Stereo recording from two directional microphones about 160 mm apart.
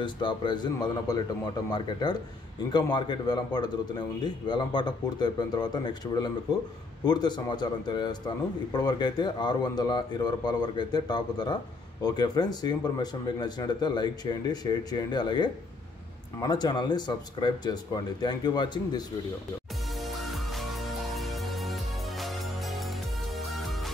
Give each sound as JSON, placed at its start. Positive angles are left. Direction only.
{"t": 0.0, "sound": "a man's voice", "side_deg": 30}
{"t": 20.0, "sound": "music", "side_deg": 0}